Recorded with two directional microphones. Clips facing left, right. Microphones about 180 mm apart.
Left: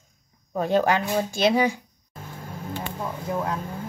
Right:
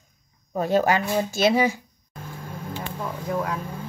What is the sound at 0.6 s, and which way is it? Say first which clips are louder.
Speech: even; 5° right (ahead or behind).